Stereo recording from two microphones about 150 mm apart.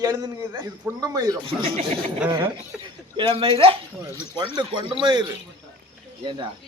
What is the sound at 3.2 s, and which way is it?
Speech, 35° right (ahead or behind).